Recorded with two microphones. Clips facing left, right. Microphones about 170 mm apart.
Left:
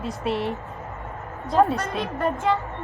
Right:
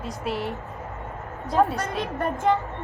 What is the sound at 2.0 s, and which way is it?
Speech, 50° right (ahead or behind).